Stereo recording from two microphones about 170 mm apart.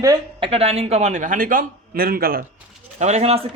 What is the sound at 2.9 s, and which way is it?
Speech, 40° right (ahead or behind).